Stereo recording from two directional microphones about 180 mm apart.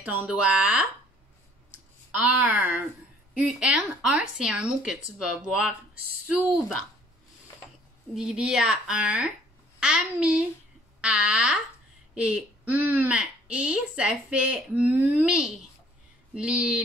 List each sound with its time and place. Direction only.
0.0 s a woman's voice: 5° right (ahead or behind)
2.1 s a woman's voice: 10° right (ahead or behind)
8.1 s a woman's voice: 5° right (ahead or behind)